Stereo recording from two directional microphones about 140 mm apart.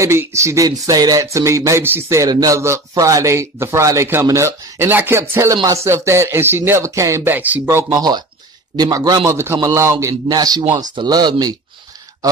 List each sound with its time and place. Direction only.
0.0 s speech: 20° right (ahead or behind)